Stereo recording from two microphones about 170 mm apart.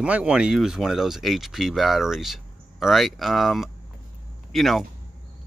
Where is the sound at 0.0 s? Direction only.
5° right (ahead or behind).